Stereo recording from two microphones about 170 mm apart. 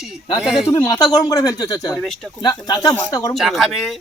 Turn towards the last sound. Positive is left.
turn(degrees=0)  # may be behind; listen again after turning